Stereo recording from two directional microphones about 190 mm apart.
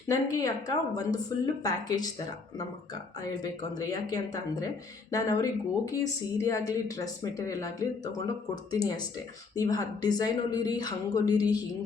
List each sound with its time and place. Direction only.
0.1 s speech: 20° left (ahead or behind)
3.2 s speech: 20° left (ahead or behind)